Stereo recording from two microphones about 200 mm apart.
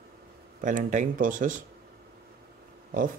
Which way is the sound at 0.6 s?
40° right (ahead or behind).